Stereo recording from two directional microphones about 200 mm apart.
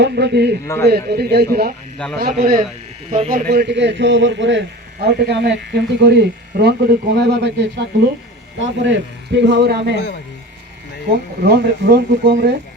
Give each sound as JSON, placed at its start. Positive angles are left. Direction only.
{"t": 0.0, "sound": "a man's voice", "side_deg": -55}
{"t": 0.6, "sound": "speech", "side_deg": 15}
{"t": 0.9, "sound": "a man's voice", "side_deg": -50}
{"t": 2.0, "sound": "speech", "side_deg": 5}
{"t": 2.4, "sound": "speech", "side_deg": -40}
{"t": 3.4, "sound": "a man's voice", "side_deg": -50}
{"t": 11.4, "sound": "a man's voice", "side_deg": -55}